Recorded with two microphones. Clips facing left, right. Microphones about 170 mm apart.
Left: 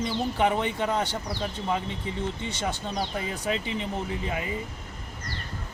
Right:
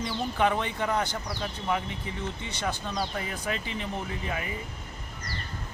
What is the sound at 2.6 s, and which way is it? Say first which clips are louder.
Speech: even; 20° left (ahead or behind).